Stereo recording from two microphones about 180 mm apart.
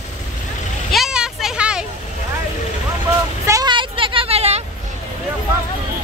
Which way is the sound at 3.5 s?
20° right (ahead or behind).